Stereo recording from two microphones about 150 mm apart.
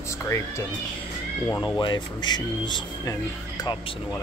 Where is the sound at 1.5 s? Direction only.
25° left (ahead or behind).